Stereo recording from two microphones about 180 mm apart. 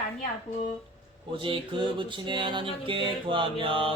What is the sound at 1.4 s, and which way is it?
Mantra, 30° right (ahead or behind).